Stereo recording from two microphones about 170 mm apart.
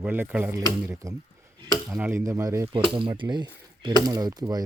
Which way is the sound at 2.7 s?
30° right (ahead or behind).